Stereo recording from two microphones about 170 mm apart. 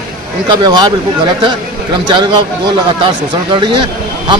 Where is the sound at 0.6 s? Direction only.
25° right (ahead or behind).